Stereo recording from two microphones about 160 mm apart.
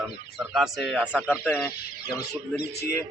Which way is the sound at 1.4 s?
10° left (ahead or behind).